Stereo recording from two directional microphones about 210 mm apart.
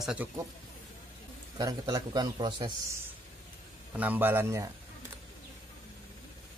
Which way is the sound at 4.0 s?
10° right (ahead or behind).